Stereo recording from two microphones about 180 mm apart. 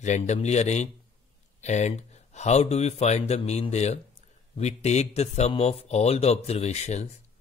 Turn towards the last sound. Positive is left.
turn(degrees=40)  # may be behind; listen again after turning